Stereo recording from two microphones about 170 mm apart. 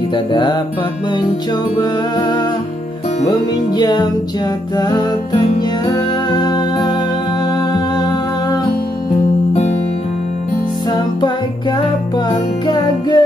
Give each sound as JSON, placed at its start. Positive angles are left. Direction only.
{"t": 0.3, "sound": "music", "side_deg": 25}
{"t": 3.3, "sound": "music", "side_deg": 25}
{"t": 9.5, "sound": "music", "side_deg": 35}
{"t": 10.9, "sound": "music", "side_deg": 25}